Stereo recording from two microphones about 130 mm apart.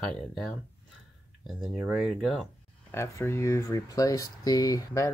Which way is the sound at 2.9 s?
20° left (ahead or behind).